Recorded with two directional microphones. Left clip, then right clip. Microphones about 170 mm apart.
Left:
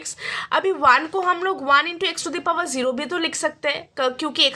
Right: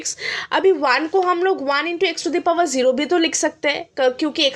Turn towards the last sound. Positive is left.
turn(degrees=0)  # may be behind; listen again after turning